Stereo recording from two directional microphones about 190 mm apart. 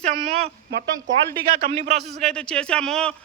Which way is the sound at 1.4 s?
55° right (ahead or behind).